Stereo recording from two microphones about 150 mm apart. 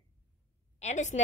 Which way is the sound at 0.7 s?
50° left (ahead or behind).